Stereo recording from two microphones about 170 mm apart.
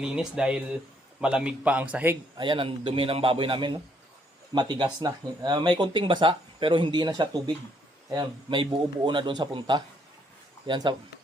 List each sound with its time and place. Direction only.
0.0 s a man's voice: 5° right (ahead or behind)
2.4 s a man's voice: 30° right (ahead or behind)